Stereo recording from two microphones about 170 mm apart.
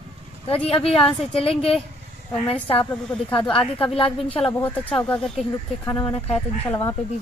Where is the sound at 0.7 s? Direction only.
35° left (ahead or behind).